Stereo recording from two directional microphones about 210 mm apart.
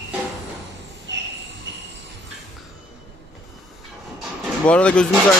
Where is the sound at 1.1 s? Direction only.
60° right (ahead or behind).